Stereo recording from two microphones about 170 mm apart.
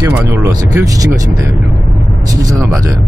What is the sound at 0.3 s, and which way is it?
Speech, 15° right (ahead or behind).